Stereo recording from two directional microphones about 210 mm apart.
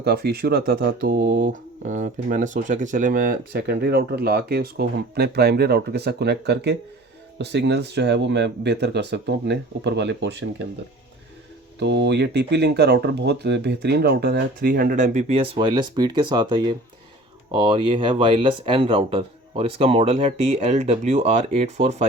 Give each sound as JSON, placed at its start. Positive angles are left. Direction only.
{"t": 0.0, "sound": "speech", "side_deg": -50}
{"t": 11.8, "sound": "speech", "side_deg": -55}